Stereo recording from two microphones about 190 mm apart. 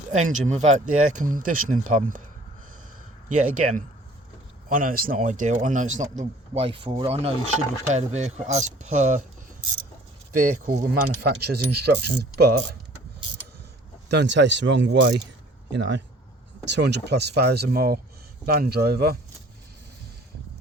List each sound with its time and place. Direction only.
0.1 s speech: 40° right (ahead or behind)
3.2 s speech: 45° right (ahead or behind)
10.3 s speech: 45° right (ahead or behind)
11.3 s speech: 60° right (ahead or behind)
14.1 s speech: 65° right (ahead or behind)